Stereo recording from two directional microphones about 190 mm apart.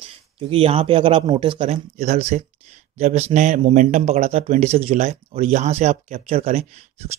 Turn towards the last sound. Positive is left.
turn(degrees=-35)  # may be behind; listen again after turning